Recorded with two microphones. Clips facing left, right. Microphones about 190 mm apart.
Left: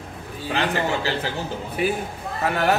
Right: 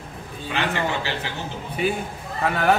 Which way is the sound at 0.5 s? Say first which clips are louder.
Left 2 dB; 35° left (ahead or behind).